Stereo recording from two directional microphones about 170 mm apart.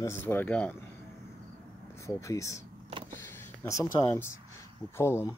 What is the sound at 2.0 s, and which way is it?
Speech, 20° left (ahead or behind).